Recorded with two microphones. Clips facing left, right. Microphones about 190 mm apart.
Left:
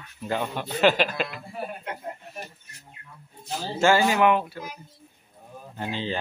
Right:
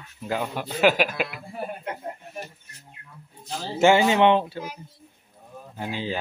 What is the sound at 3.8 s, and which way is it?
Speech, 20° right (ahead or behind).